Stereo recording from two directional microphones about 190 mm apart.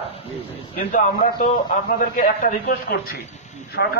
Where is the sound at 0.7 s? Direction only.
45° left (ahead or behind).